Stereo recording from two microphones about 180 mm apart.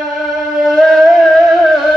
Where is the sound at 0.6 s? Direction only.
Centre (ahead or behind).